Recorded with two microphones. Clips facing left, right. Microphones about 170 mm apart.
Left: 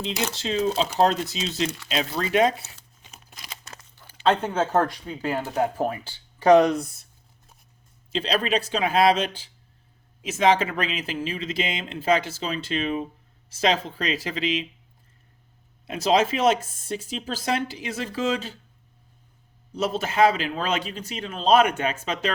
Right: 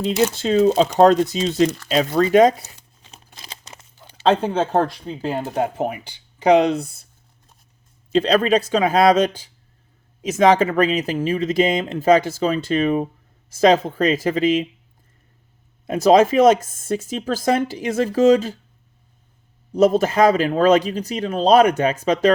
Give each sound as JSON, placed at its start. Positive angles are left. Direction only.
{"t": 0.2, "sound": "speech", "side_deg": -45}
{"t": 3.3, "sound": "crunch", "side_deg": -30}
{"t": 4.3, "sound": "speech", "side_deg": -30}
{"t": 8.1, "sound": "speech", "side_deg": -45}
{"t": 10.6, "sound": "speech", "side_deg": -45}
{"t": 15.9, "sound": "speech", "side_deg": -45}
{"t": 19.7, "sound": "speech", "side_deg": -45}